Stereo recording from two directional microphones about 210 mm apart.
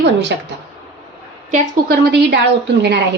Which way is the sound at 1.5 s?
45° right (ahead or behind).